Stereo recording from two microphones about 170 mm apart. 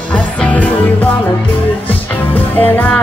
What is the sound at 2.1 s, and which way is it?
Music, 10° left (ahead or behind).